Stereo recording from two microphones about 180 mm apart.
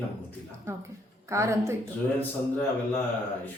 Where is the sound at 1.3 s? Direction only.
15° right (ahead or behind).